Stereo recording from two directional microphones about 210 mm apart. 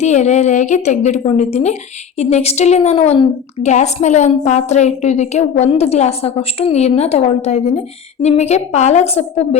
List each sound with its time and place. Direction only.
0.0 s a woman's voice: 35° left (ahead or behind)